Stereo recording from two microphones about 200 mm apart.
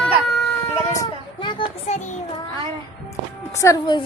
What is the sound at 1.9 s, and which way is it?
Child singing, 35° left (ahead or behind).